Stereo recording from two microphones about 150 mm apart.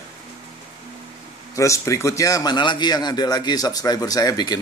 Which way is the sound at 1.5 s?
20° left (ahead or behind).